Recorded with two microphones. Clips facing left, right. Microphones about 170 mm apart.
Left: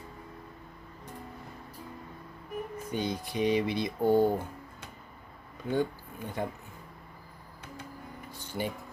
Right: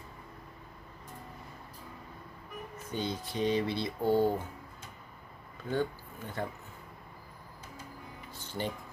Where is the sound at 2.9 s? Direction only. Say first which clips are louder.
Left 1 dB; 15° left (ahead or behind).